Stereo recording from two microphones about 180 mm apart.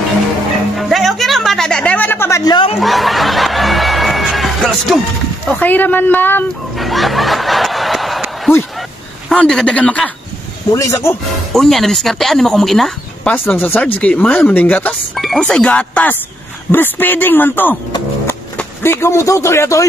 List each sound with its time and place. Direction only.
0.7 s music: centre (ahead or behind); by 2.7 s 20° left (ahead or behind)
2.7 s music: centre (ahead or behind)
5.5 s speech: 10° left (ahead or behind)
6.8 s snicker: centre (ahead or behind)
8.5 s speech: 15° left (ahead or behind)
11.5 s speech: centre (ahead or behind)